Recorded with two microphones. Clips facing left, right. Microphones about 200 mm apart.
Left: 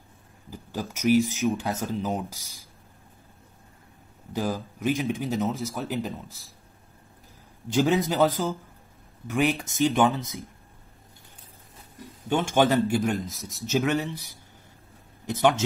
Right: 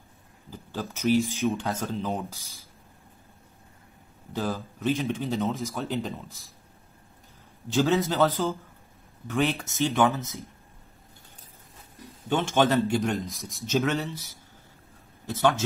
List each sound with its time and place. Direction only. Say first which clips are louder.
0.5 s speech: left 1 dB; 10° left (ahead or behind)
4.3 s speech: left 2 dB; 10° left (ahead or behind)
7.7 s speech: left 1 dB; 15° left (ahead or behind)
12.3 s speech: left 1 dB; 10° left (ahead or behind)
13.7 s speech: left 1 dB; 15° left (ahead or behind)